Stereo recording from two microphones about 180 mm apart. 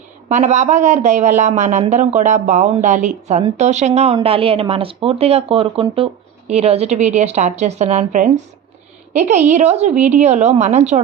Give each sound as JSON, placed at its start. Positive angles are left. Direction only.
{"t": 0.3, "sound": "speech", "side_deg": -40}